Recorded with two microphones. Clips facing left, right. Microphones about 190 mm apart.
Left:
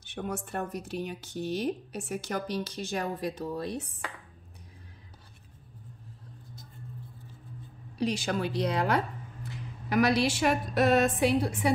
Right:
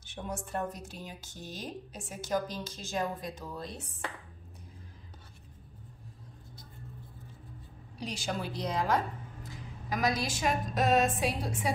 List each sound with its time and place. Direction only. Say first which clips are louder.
0.0 s speech: left 4 dB; 60° left (ahead or behind)
8.0 s a woman's voice: left 7 dB; 65° left (ahead or behind)